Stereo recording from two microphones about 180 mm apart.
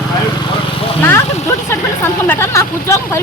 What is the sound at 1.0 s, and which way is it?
Speech, 15° left (ahead or behind).